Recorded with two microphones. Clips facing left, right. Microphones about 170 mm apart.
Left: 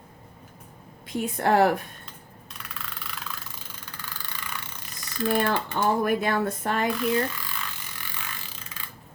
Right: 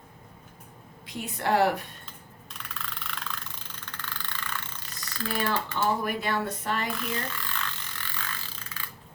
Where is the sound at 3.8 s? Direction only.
10° left (ahead or behind).